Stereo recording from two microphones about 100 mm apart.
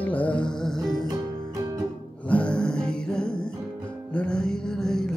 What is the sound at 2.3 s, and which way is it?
Music, 10° left (ahead or behind).